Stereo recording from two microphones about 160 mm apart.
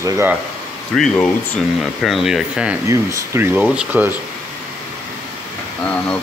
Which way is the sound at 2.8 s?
20° right (ahead or behind).